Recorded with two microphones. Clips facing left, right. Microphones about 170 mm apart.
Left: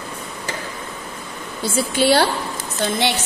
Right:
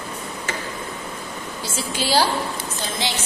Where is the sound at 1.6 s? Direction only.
60° left (ahead or behind).